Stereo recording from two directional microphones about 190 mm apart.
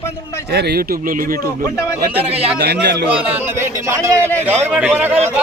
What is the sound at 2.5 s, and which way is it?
Speech, 55° right (ahead or behind).